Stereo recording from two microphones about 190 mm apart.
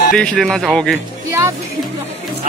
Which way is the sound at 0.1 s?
5° left (ahead or behind).